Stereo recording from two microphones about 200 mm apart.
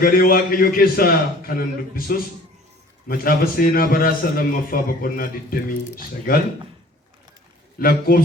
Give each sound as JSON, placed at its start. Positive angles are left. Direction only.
{"t": 0.0, "sound": "a man's voice", "side_deg": 45}
{"t": 7.8, "sound": "a man's voice", "side_deg": 45}